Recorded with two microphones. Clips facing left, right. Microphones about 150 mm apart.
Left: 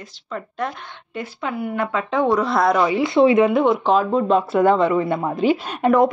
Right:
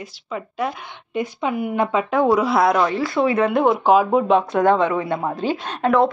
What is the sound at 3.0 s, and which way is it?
Speech, 20° left (ahead or behind).